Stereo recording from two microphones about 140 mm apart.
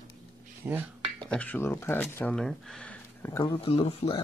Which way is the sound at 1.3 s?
10° left (ahead or behind).